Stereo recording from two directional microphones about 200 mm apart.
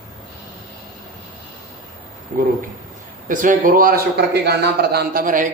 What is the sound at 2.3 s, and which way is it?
A man's voice, 40° right (ahead or behind).